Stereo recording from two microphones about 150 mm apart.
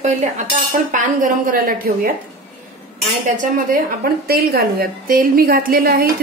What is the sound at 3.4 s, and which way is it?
A woman's voice, 65° right (ahead or behind).